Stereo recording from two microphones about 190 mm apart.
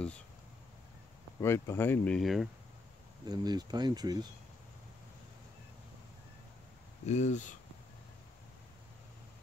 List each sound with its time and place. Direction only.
1.4 s speech: 15° left (ahead or behind)
3.3 s speech: 20° right (ahead or behind)
7.1 s speech: 40° left (ahead or behind)